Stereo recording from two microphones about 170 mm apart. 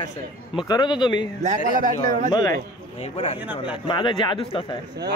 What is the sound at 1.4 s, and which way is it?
Speech, 45° right (ahead or behind).